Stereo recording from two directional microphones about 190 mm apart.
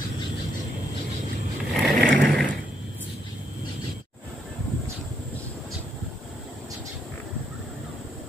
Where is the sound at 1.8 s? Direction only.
5° left (ahead or behind).